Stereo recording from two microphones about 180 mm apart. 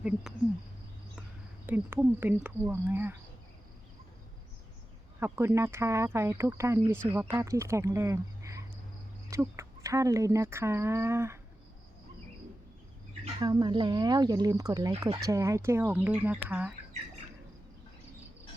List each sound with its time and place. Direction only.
1.6 s speech: 10° right (ahead or behind)
5.2 s speech: 15° right (ahead or behind)
13.4 s speech: 25° right (ahead or behind); by 16.7 s 5° right (ahead or behind)